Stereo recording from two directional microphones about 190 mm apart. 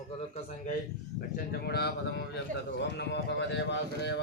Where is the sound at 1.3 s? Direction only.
55° left (ahead or behind).